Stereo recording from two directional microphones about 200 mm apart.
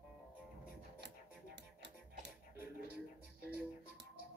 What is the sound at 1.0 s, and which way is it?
Music, 55° right (ahead or behind).